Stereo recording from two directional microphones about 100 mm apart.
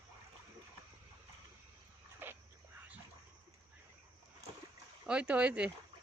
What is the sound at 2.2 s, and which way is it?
Dog, 20° right (ahead or behind).